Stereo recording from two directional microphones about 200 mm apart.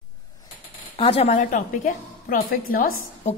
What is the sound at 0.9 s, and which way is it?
A woman's voice, 30° left (ahead or behind).